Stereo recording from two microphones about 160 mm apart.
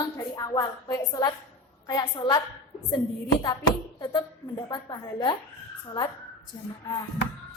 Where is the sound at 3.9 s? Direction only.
25° left (ahead or behind).